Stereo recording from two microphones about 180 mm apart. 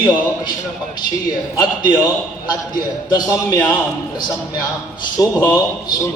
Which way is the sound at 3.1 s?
20° left (ahead or behind).